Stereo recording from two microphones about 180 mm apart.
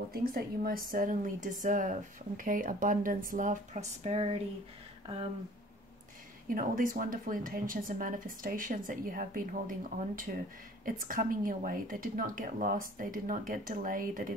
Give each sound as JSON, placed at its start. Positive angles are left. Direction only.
{"t": 0.1, "sound": "a woman's voice", "side_deg": -55}
{"t": 6.5, "sound": "a woman's voice", "side_deg": -50}